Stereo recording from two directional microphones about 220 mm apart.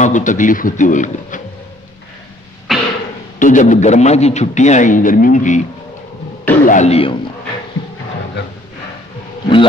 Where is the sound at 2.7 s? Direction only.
Centre (ahead or behind).